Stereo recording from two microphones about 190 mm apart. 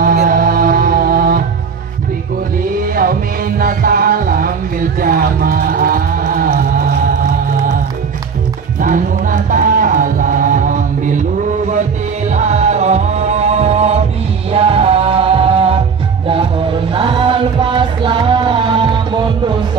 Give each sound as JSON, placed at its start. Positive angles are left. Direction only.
{"t": 0.0, "sound": "music", "side_deg": -50}
{"t": 3.0, "sound": "music", "side_deg": -50}
{"t": 8.8, "sound": "music", "side_deg": -45}